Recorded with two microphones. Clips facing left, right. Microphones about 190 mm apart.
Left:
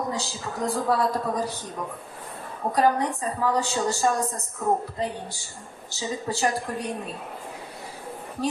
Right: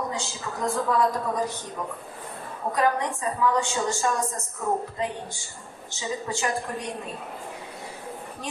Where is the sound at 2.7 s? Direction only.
35° left (ahead or behind).